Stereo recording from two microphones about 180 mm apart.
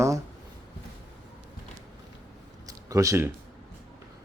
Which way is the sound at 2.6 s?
20° right (ahead or behind).